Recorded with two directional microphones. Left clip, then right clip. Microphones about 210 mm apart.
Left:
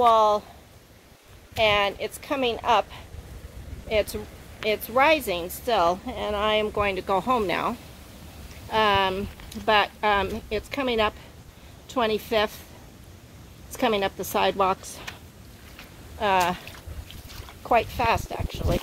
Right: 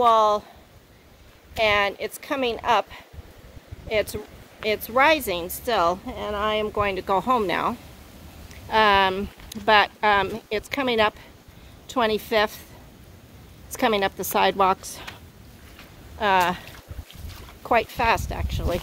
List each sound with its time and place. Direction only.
0.0 s a woman's voice: 10° right (ahead or behind)
1.5 s a woman's voice: 10° right (ahead or behind)
6.0 s speech: 5° left (ahead or behind)
6.8 s a woman's voice: 10° right (ahead or behind)
13.7 s a woman's voice: 15° right (ahead or behind)
16.2 s a woman's voice: 15° right (ahead or behind)
17.6 s speech: 20° right (ahead or behind)